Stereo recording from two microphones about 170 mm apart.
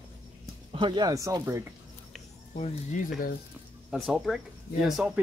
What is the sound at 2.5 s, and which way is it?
Speech, 45° left (ahead or behind).